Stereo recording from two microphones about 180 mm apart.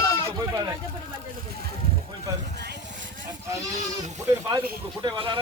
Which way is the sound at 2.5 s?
70° right (ahead or behind).